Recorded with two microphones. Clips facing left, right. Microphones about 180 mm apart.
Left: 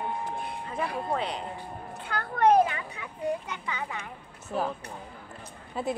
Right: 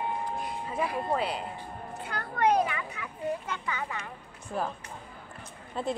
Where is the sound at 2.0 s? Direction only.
65° left (ahead or behind).